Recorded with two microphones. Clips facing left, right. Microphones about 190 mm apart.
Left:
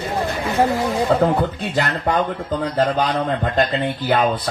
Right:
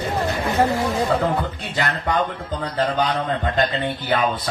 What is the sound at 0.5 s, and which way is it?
Speech, 15° left (ahead or behind).